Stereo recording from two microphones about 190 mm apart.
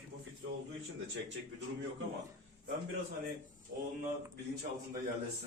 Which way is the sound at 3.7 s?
55° right (ahead or behind).